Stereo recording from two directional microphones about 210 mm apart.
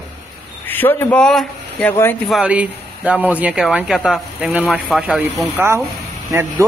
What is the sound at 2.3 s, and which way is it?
Speech, 5° right (ahead or behind).